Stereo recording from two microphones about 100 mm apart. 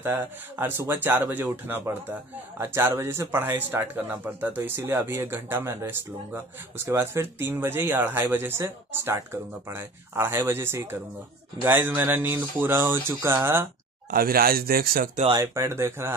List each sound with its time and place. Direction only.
0.0 s a man's voice: 20° right (ahead or behind)
15.4 s a man's voice: 25° right (ahead or behind)